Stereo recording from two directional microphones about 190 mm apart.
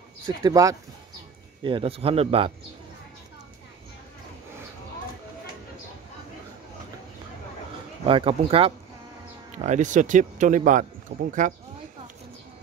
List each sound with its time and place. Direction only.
0.4 s a man's voice: 20° right (ahead or behind)
8.0 s a man's voice: 30° right (ahead or behind)